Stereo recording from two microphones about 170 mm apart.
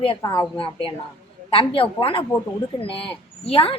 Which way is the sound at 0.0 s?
30° left (ahead or behind).